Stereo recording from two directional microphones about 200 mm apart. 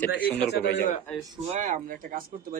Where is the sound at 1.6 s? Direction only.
45° right (ahead or behind).